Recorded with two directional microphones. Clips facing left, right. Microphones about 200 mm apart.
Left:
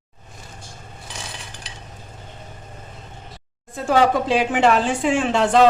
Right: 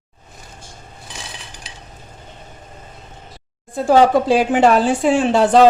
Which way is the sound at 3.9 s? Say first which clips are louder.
Right 5 dB; 35° right (ahead or behind).